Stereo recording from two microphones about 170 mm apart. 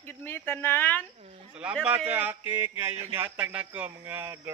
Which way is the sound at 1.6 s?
5° right (ahead or behind).